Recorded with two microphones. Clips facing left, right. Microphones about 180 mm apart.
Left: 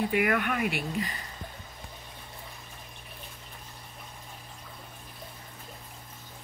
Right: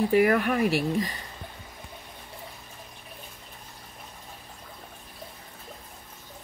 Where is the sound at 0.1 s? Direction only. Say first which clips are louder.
Right 6 dB; 35° right (ahead or behind).